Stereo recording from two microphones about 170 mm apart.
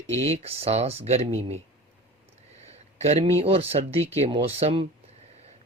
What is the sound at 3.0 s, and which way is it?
Speech, 35° right (ahead or behind).